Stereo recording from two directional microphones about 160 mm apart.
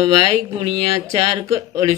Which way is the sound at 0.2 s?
30° right (ahead or behind).